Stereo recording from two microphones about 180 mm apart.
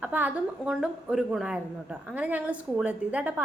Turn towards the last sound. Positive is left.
turn(degrees=-10)  # may be behind; listen again after turning